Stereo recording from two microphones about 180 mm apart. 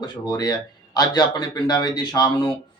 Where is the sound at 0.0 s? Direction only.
25° left (ahead or behind).